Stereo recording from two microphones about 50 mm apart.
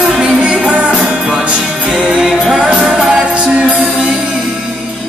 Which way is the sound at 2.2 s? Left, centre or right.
Centre.